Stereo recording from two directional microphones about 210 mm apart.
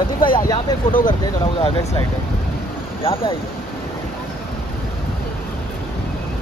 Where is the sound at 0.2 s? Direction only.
20° left (ahead or behind).